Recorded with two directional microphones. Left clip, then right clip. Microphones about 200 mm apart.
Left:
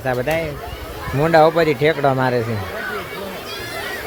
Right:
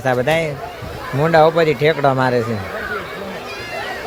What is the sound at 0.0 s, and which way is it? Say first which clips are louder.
Speech: right 4 dB; 10° right (ahead or behind).